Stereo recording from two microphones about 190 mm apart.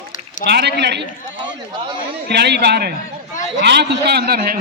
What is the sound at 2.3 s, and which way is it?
A man's voice, 60° right (ahead or behind).